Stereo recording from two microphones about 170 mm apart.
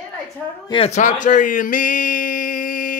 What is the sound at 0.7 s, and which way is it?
Speech, 35° left (ahead or behind).